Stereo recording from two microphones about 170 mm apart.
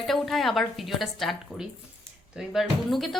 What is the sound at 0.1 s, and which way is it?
A woman's voice, centre (ahead or behind).